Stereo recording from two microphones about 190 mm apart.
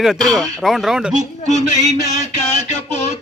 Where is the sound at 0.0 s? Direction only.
Centre (ahead or behind).